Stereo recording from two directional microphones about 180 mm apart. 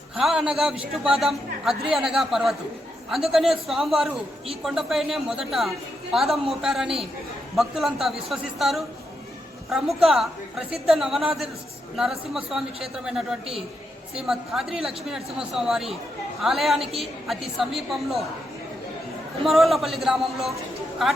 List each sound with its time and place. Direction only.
0.2 s a woman's voice: 5° right (ahead or behind)
14.3 s a woman's voice: 5° right (ahead or behind)
19.5 s a woman's voice: centre (ahead or behind)